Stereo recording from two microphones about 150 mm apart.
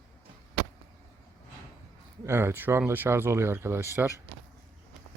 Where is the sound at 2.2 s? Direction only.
15° right (ahead or behind).